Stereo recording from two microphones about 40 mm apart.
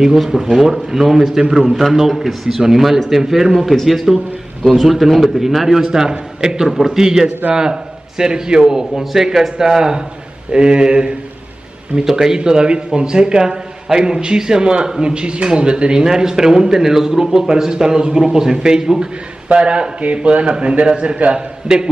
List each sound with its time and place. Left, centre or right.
0.0 s a man's voice: centre; by 11.1 s right
12.0 s a man's voice: centre
19.5 s a man's voice: right